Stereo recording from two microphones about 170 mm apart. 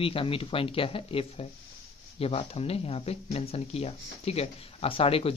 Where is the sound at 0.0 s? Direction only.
30° left (ahead or behind).